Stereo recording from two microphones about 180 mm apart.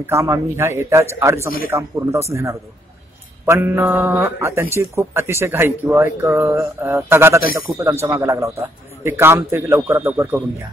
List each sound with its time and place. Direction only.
0.0 s speech: 15° right (ahead or behind)
3.4 s speech: 15° right (ahead or behind)